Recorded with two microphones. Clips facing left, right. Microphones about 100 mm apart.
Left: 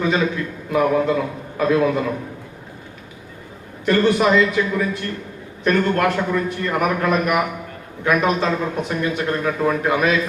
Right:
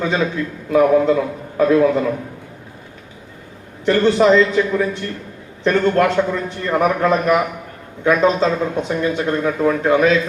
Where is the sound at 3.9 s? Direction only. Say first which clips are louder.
Right 2 dB; 25° right (ahead or behind).